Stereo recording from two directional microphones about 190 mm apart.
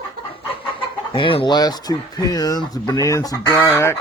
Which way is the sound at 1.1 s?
25° left (ahead or behind).